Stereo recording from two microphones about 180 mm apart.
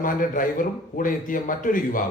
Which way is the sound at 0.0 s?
50° left (ahead or behind).